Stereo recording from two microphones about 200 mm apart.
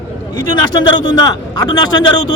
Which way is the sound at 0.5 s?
20° left (ahead or behind).